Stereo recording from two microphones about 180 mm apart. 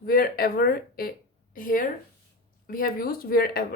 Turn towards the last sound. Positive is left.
turn(degrees=60)  # may be behind; listen again after turning